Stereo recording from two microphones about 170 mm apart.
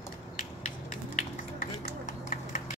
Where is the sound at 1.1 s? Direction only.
50° left (ahead or behind).